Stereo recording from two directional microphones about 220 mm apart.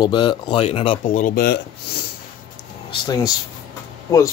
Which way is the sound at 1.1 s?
40° left (ahead or behind).